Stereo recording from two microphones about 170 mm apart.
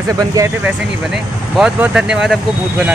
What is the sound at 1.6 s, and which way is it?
Speech, 5° right (ahead or behind).